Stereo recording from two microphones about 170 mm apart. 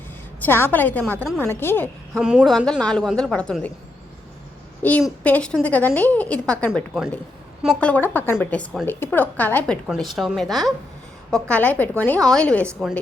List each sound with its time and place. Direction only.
0.4 s a woman's voice: 10° left (ahead or behind)
2.1 s a woman's voice: 5° right (ahead or behind)
4.8 s a woman's voice: 10° left (ahead or behind)
9.8 s a woman's voice: centre (ahead or behind)